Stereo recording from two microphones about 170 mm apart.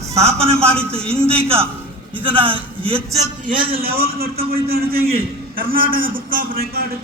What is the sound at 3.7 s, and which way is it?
A man's voice, 60° right (ahead or behind).